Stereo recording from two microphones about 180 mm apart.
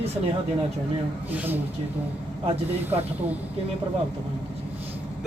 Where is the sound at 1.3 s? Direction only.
10° right (ahead or behind).